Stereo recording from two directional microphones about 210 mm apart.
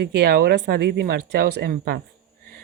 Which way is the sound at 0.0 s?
50° right (ahead or behind).